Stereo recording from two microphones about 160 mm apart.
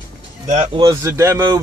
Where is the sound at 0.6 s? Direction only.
30° right (ahead or behind).